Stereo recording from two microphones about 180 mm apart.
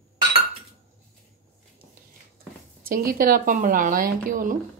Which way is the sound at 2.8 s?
55° right (ahead or behind).